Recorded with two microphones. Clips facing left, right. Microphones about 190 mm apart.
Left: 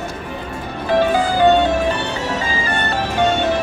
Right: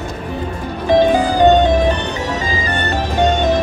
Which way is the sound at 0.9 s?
15° right (ahead or behind).